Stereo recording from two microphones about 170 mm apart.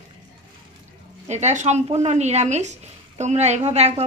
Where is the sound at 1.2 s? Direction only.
40° right (ahead or behind).